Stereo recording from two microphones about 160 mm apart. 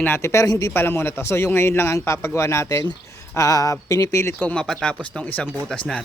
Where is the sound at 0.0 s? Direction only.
15° left (ahead or behind).